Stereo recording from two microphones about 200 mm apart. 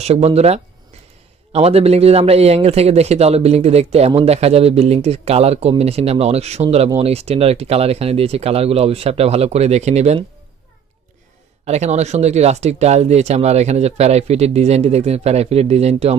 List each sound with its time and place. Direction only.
0.0 s speech: 30° right (ahead or behind)
11.6 s speech: 35° right (ahead or behind)